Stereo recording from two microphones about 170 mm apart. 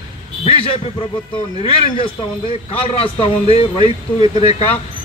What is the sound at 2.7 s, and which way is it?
A man's voice, 35° left (ahead or behind).